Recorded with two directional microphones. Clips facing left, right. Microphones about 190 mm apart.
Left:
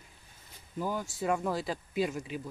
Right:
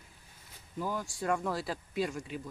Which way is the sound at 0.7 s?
Centre (ahead or behind).